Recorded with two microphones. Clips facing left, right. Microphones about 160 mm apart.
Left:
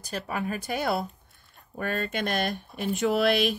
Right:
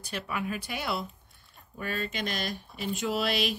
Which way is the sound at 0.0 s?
40° left (ahead or behind).